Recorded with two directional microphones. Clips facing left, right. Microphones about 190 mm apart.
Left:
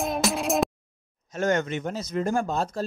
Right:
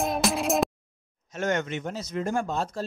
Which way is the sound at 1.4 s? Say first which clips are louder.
Left 3 dB; 35° left (ahead or behind).